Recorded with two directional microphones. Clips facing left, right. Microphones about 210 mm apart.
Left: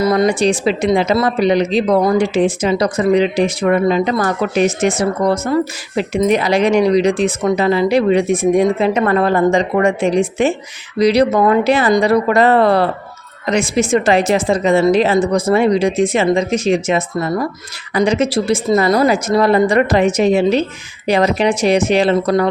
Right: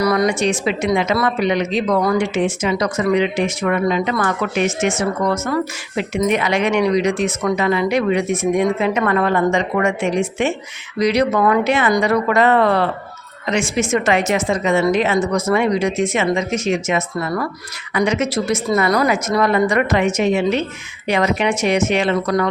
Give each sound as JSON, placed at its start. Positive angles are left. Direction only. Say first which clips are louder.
{"t": 0.0, "sound": "a woman's voice", "louder": "left 3 dB", "side_deg": 25}